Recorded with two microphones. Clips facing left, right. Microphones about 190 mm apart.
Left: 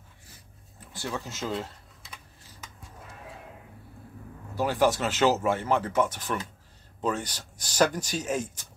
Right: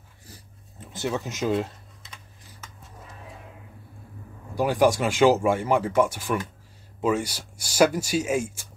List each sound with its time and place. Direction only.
0.7 s speech: 20° right (ahead or behind)
4.6 s speech: 15° right (ahead or behind)